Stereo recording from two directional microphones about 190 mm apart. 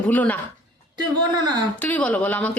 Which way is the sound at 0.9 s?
20° right (ahead or behind).